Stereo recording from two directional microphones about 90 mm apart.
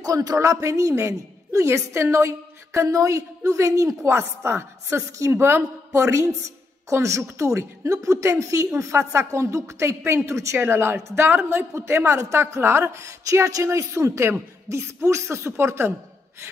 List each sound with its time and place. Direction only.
0.0 s a woman's voice: 40° right (ahead or behind)